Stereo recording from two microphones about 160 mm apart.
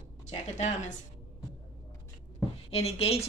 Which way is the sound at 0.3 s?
45° left (ahead or behind).